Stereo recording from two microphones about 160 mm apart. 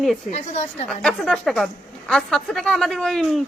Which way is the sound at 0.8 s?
Centre (ahead or behind).